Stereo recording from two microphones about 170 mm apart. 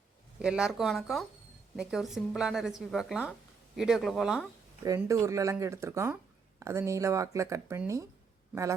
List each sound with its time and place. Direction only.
0.3 s a woman's voice: 5° right (ahead or behind)
4.8 s speech: 20° right (ahead or behind)